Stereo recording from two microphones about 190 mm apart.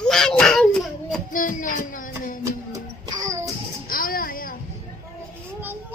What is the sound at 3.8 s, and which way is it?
Music, 50° left (ahead or behind).